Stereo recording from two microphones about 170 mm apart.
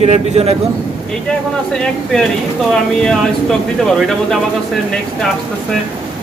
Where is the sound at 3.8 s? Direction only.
Centre (ahead or behind).